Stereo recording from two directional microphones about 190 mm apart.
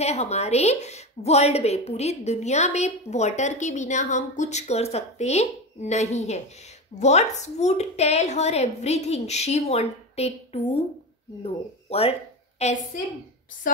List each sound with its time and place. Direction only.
0.0 s a woman's voice: 35° left (ahead or behind)